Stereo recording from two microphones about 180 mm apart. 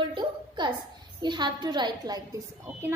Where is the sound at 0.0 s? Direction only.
25° right (ahead or behind).